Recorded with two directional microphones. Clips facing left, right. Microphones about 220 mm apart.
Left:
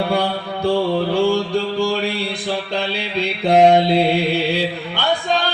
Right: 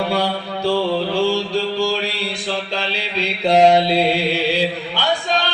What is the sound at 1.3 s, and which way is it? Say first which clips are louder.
Mantra: left 1 dB; 55° left (ahead or behind).